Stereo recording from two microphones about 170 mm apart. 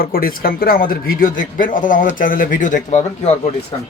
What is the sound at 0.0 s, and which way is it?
A man's voice, 60° left (ahead or behind).